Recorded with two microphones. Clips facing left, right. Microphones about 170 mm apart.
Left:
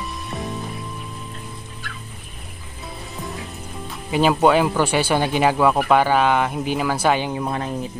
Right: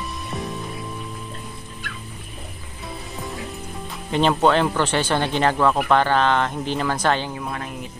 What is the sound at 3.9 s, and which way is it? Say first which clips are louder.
Speech: left 1 dB; 5° left (ahead or behind).